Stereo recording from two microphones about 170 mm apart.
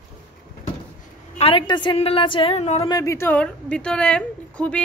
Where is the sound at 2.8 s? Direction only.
20° left (ahead or behind).